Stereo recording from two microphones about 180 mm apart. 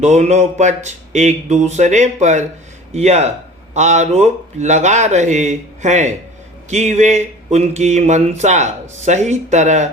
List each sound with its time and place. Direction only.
0.0 s speech: 40° right (ahead or behind)